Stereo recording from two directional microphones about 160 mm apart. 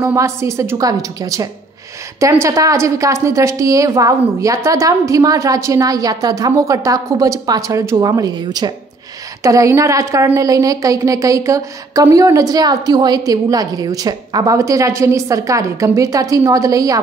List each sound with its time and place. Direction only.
0.0 s a woman's voice: 20° right (ahead or behind)